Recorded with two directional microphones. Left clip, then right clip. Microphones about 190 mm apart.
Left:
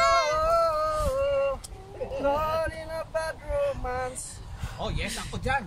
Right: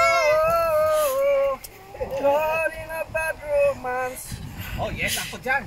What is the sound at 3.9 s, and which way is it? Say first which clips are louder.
Speech: right 5 dB; 5° left (ahead or behind).